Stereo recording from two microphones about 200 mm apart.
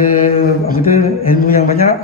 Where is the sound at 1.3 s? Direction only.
45° left (ahead or behind).